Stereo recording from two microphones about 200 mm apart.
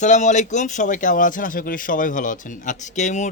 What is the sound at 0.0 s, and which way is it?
Speech, 35° left (ahead or behind).